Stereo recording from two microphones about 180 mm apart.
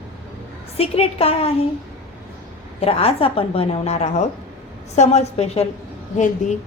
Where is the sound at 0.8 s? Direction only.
35° left (ahead or behind).